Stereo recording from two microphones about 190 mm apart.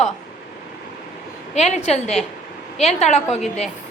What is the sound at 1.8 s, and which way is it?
A woman's voice, 35° left (ahead or behind).